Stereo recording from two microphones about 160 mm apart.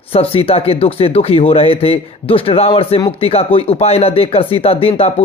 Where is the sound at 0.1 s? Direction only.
35° left (ahead or behind).